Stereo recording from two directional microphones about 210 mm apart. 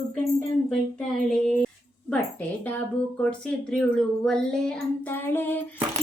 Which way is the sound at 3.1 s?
5° left (ahead or behind).